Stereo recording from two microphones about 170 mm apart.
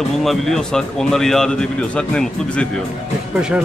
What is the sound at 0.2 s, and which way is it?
Speech, centre (ahead or behind).